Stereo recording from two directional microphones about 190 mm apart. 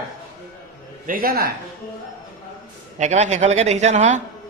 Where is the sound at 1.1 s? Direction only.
50° right (ahead or behind).